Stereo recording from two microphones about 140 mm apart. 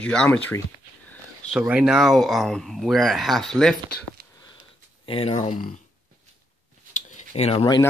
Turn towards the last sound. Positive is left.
turn(degrees=45)  # may be behind; listen again after turning